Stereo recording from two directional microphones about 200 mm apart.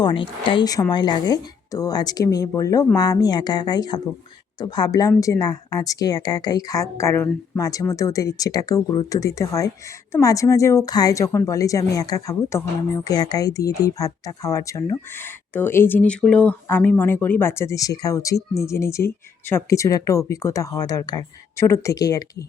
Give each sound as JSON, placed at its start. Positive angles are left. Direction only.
{"t": 0.0, "sound": "a woman's voice", "side_deg": 25}